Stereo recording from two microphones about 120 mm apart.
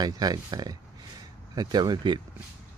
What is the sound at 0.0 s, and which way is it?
Speech, 35° right (ahead or behind).